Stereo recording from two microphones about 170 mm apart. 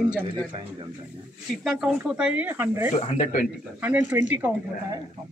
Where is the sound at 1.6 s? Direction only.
5° right (ahead or behind).